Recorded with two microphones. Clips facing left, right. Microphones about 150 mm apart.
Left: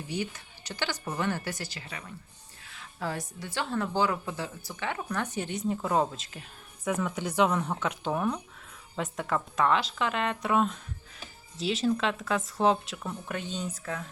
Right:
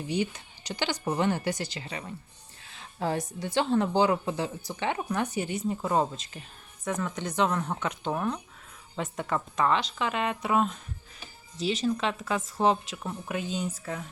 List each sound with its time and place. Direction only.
0.1 s a woman's voice: 20° right (ahead or behind)